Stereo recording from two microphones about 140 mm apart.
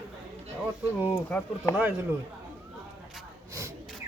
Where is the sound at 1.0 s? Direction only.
15° left (ahead or behind).